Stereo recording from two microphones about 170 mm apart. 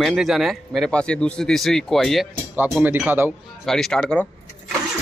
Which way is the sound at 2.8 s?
10° right (ahead or behind).